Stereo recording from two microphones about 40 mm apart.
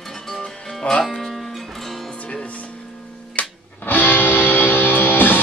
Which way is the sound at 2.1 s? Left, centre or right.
Left.